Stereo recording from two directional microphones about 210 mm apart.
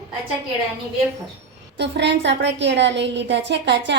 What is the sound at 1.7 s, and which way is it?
A woman's voice, 55° right (ahead or behind).